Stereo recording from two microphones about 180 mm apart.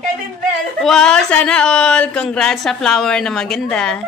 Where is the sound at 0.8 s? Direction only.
5° left (ahead or behind).